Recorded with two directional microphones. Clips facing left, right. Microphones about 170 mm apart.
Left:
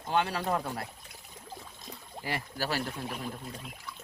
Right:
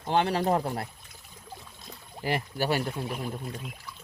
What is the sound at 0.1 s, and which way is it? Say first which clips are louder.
Speech: right 5 dB; 30° right (ahead or behind).